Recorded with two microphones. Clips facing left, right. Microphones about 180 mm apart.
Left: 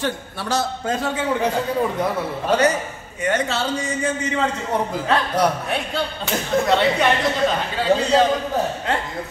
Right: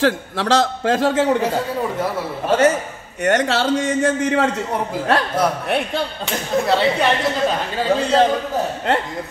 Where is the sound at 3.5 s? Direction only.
90° right.